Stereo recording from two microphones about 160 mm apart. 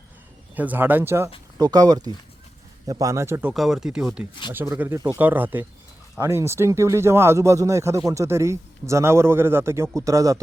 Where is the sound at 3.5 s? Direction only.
Centre (ahead or behind).